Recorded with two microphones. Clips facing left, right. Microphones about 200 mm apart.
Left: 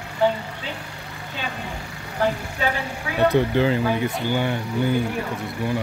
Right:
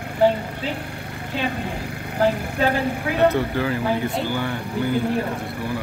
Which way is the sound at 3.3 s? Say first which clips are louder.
Left 3 dB; 20° left (ahead or behind).